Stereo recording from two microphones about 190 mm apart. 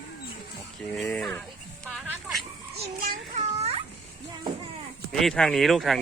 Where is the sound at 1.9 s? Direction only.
5° right (ahead or behind).